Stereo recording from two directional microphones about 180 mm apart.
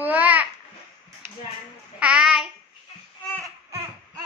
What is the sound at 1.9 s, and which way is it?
Child singing, 5° right (ahead or behind).